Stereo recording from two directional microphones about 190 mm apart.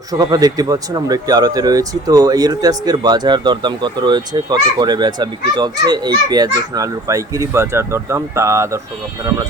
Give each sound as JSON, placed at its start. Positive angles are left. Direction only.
{"t": 0.1, "sound": "speech", "side_deg": -20}